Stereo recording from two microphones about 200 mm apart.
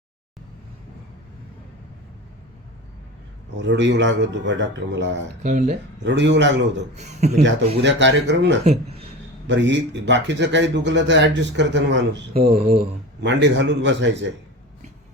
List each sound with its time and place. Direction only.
3.6 s speech: 65° right (ahead or behind)
5.4 s speech: 35° right (ahead or behind)
6.1 s speech: 60° right (ahead or behind)
6.9 s speech: 35° right (ahead or behind)
7.8 s speech: 65° right (ahead or behind)
8.6 s speech: 30° right (ahead or behind)
9.5 s speech: 65° right (ahead or behind)
12.3 s speech: 30° right (ahead or behind)
13.2 s speech: 65° right (ahead or behind)